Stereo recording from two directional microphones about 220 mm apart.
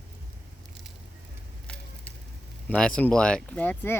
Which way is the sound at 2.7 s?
5° left (ahead or behind).